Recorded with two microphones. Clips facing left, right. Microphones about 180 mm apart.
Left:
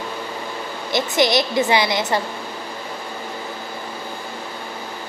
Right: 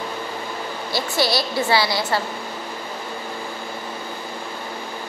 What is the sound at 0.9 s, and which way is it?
A woman's voice, 20° left (ahead or behind).